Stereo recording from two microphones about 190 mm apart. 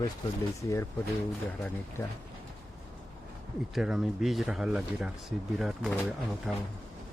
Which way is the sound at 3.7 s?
5° right (ahead or behind).